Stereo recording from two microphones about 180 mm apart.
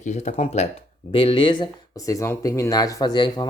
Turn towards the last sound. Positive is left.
turn(degrees=25)  # may be behind; listen again after turning